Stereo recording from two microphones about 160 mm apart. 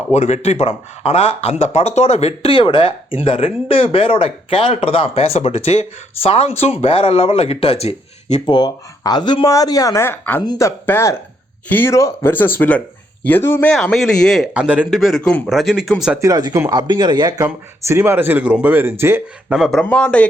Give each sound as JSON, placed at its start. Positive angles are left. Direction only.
{"t": 0.1, "sound": "speech", "side_deg": 45}
{"t": 8.4, "sound": "speech", "side_deg": 25}
{"t": 13.7, "sound": "speech", "side_deg": 5}
{"t": 14.5, "sound": "speech", "side_deg": -10}
{"t": 16.2, "sound": "speech", "side_deg": -25}
{"t": 17.4, "sound": "speech", "side_deg": -15}
{"t": 19.5, "sound": "speech", "side_deg": 0}